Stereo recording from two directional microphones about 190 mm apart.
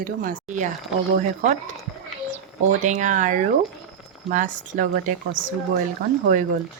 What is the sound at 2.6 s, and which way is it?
Speech, 40° right (ahead or behind).